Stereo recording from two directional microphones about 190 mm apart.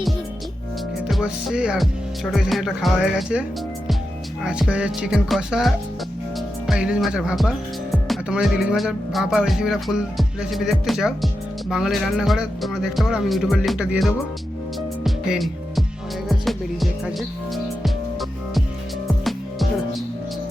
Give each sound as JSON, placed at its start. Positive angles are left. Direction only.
{"t": 1.0, "sound": "music", "side_deg": 0}
{"t": 2.3, "sound": "speech", "side_deg": 0}
{"t": 4.4, "sound": "speech", "side_deg": -5}
{"t": 15.0, "sound": "music", "side_deg": 0}